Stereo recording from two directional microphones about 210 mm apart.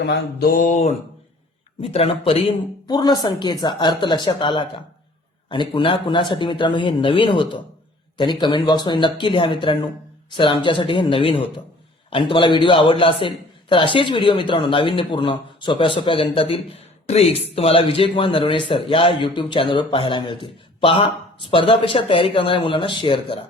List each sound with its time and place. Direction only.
0.0 s mantra: 50° left (ahead or behind); by 0.9 s 35° left (ahead or behind)
1.8 s speech: 25° left (ahead or behind)